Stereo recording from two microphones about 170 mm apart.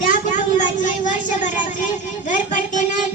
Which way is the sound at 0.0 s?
50° left (ahead or behind).